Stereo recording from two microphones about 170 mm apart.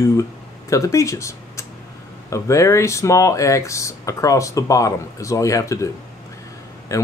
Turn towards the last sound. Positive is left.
turn(degrees=15)  # may be behind; listen again after turning